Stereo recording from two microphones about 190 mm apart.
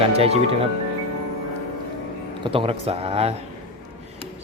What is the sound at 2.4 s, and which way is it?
Speech, 30° right (ahead or behind).